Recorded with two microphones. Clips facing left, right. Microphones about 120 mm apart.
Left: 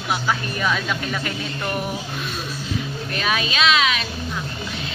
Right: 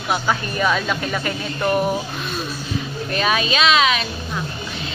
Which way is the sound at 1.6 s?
30° right (ahead or behind).